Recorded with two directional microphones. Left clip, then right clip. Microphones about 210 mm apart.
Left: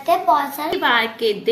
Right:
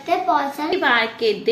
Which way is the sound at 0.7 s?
Centre (ahead or behind).